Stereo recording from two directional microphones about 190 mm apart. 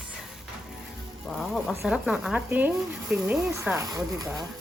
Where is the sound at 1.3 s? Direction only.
Centre (ahead or behind).